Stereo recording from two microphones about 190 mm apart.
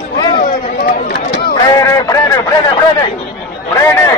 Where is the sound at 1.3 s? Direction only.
20° left (ahead or behind).